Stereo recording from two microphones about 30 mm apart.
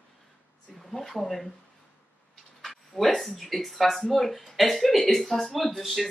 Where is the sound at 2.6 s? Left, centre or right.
Centre.